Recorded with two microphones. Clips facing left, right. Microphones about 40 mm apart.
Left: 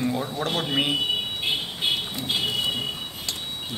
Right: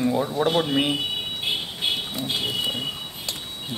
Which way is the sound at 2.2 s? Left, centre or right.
Centre.